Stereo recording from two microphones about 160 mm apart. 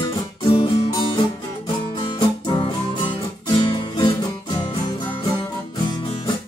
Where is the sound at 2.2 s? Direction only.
30° left (ahead or behind).